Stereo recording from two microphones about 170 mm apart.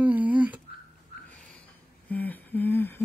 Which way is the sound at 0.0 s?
10° right (ahead or behind).